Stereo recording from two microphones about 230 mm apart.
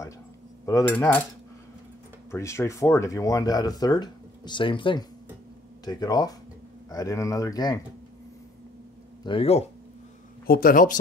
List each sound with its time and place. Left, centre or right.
0.7 s speech: centre
2.3 s speech: centre
9.2 s speech: left
10.4 s speech: left